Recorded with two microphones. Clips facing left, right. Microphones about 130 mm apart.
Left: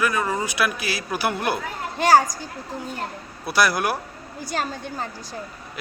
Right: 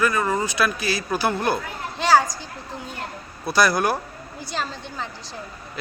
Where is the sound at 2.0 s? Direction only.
45° left (ahead or behind).